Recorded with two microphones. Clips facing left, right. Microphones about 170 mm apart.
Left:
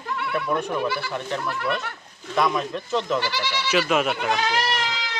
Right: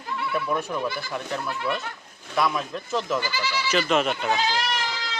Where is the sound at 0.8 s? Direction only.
70° left (ahead or behind).